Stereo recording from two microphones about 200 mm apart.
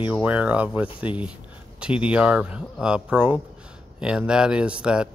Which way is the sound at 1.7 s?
5° right (ahead or behind).